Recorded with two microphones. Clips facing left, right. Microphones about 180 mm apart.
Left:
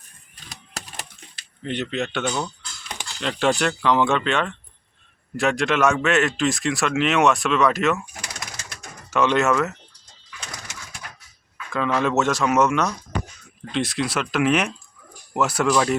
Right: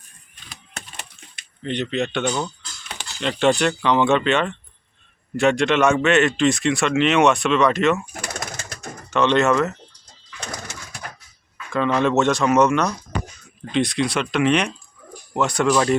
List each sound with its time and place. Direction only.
1.6 s speech: 5° left (ahead or behind)
8.1 s bird: 50° right (ahead or behind)
9.0 s speech: 5° left (ahead or behind)
10.4 s bird: 45° right (ahead or behind)
11.5 s speech: 5° left (ahead or behind)